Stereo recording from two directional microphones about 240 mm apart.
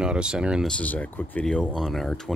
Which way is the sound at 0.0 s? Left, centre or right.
Centre.